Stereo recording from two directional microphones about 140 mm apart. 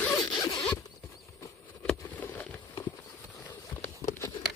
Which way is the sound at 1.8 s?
10° left (ahead or behind).